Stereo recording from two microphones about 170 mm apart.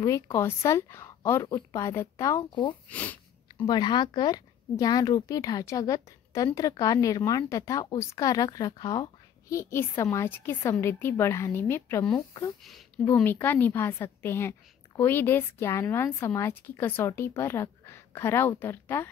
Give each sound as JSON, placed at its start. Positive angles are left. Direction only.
{"t": 0.0, "sound": "speech", "side_deg": 15}
{"t": 2.9, "sound": "sniff", "side_deg": 10}
{"t": 3.6, "sound": "speech", "side_deg": 25}
{"t": 13.0, "sound": "speech", "side_deg": 15}